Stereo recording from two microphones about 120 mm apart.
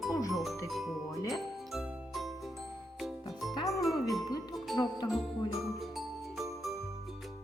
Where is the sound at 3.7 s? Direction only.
Centre (ahead or behind).